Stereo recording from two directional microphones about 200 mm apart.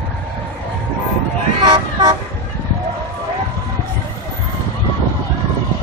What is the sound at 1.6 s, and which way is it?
Toot, 20° right (ahead or behind).